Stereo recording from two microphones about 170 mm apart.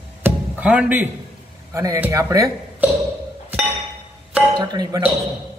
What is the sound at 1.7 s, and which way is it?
Speech, 15° right (ahead or behind).